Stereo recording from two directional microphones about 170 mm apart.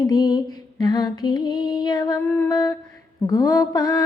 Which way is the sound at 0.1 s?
20° left (ahead or behind).